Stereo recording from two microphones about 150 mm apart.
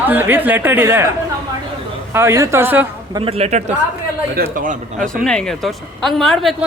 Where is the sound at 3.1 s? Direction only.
40° right (ahead or behind).